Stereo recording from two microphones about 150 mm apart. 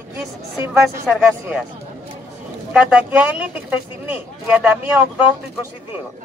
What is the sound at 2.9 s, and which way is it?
Speech, 10° right (ahead or behind).